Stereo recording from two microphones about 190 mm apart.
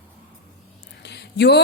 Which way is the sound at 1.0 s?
60° left (ahead or behind).